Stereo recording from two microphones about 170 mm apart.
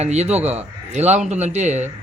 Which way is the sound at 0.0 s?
40° right (ahead or behind).